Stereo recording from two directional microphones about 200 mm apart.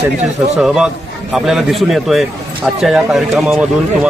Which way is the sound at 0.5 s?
Centre (ahead or behind).